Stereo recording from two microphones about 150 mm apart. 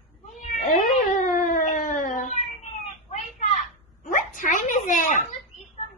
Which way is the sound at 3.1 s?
50° left (ahead or behind).